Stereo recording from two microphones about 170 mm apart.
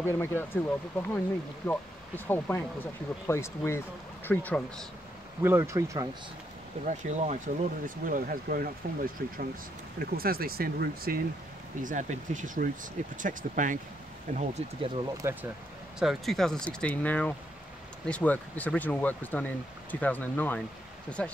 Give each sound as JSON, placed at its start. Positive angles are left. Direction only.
{"t": 0.0, "sound": "speech", "side_deg": 15}
{"t": 5.4, "sound": "speech", "side_deg": -15}
{"t": 6.9, "sound": "speech", "side_deg": -45}
{"t": 11.8, "sound": "speech", "side_deg": -50}
{"t": 15.2, "sound": "speech", "side_deg": -15}
{"t": 16.0, "sound": "speech", "side_deg": 0}